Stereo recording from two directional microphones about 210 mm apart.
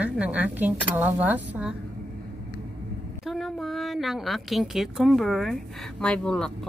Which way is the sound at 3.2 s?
Centre (ahead or behind).